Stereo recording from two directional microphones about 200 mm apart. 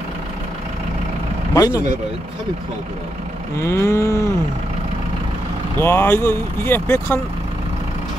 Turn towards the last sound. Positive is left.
turn(degrees=10)  # may be behind; listen again after turning